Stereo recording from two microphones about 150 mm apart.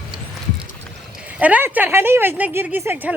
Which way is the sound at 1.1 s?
10° right (ahead or behind).